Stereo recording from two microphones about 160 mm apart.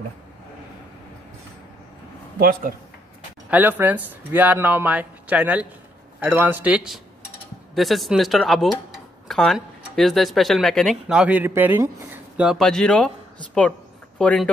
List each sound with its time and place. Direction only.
2.3 s a man's voice: 70° right (ahead or behind)
3.4 s speech: 10° right (ahead or behind); by 13.1 s 5° left (ahead or behind)
13.6 s a sound: 5° left (ahead or behind)